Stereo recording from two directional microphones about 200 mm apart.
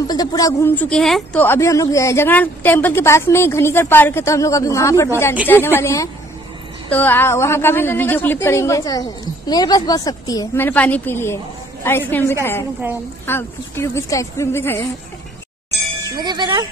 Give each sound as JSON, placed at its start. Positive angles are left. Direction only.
{"t": 0.1, "sound": "a woman's voice", "side_deg": 20}
{"t": 16.2, "sound": "speech", "side_deg": -20}